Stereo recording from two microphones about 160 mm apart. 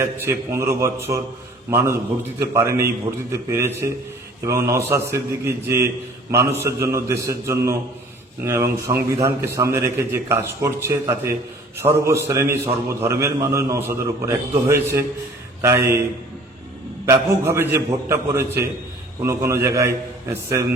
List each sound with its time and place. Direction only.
0.0 s a man's voice: 15° right (ahead or behind)
4.4 s a man's voice: 20° right (ahead or behind)
17.1 s a man's voice: 15° right (ahead or behind)